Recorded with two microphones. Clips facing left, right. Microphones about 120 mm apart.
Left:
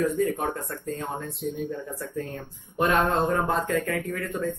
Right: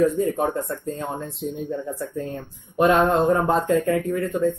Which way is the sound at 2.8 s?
20° right (ahead or behind).